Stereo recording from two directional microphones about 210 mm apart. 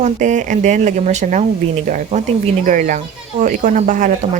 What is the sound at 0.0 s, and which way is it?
Speech, 35° right (ahead or behind).